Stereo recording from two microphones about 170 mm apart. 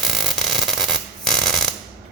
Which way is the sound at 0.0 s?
Centre (ahead or behind).